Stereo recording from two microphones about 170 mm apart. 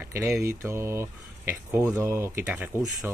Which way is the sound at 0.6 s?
15° right (ahead or behind).